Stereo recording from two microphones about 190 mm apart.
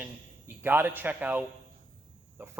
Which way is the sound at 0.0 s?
10° right (ahead or behind).